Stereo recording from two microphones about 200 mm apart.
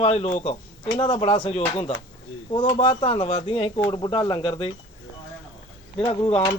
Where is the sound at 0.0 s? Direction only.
35° left (ahead or behind).